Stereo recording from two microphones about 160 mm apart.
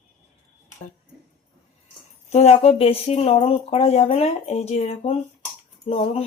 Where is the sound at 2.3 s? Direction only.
45° left (ahead or behind).